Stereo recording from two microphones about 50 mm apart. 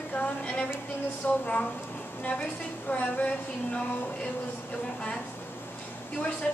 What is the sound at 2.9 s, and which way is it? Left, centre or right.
Speech, left.